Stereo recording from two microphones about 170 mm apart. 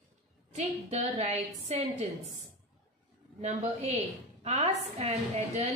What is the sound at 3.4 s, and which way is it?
A woman's voice, 40° right (ahead or behind).